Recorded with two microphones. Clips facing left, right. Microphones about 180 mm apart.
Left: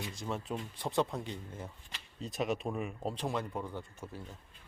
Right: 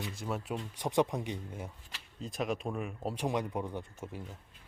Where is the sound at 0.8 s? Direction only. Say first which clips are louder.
Right 3 dB; 15° right (ahead or behind).